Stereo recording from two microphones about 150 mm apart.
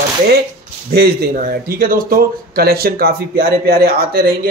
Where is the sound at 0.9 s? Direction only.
90° right.